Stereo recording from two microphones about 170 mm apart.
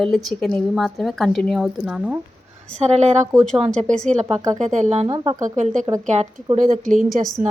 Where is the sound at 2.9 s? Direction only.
40° right (ahead or behind).